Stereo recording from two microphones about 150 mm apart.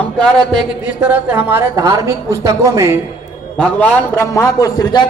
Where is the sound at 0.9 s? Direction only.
10° right (ahead or behind).